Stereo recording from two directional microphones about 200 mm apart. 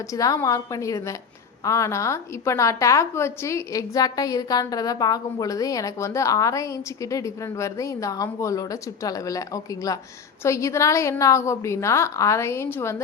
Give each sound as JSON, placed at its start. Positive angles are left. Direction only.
{"t": 0.1, "sound": "a woman's voice", "side_deg": 15}